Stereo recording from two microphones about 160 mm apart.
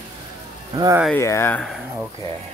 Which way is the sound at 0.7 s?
25° right (ahead or behind).